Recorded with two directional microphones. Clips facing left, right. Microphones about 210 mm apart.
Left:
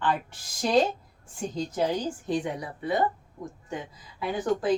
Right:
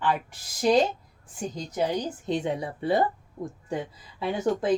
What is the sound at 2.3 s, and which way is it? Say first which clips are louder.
Speech: right 3 dB; 25° right (ahead or behind).